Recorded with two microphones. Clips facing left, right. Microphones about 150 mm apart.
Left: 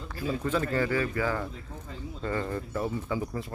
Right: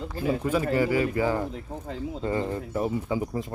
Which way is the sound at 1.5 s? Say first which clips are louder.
Right 7 dB; 75° right (ahead or behind).